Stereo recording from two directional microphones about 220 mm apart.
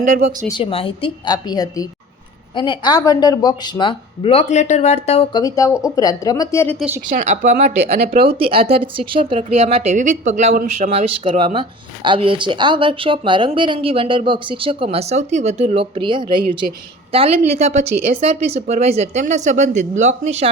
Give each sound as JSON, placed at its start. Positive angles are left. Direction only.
{"t": 0.0, "sound": "speech", "side_deg": -35}
{"t": 0.4, "sound": "speech", "side_deg": 20}
{"t": 5.3, "sound": "speech", "side_deg": 15}
{"t": 6.7, "sound": "speech", "side_deg": -5}
{"t": 7.3, "sound": "speech", "side_deg": -35}